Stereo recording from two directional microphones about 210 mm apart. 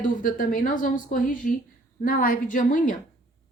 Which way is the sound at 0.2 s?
40° left (ahead or behind).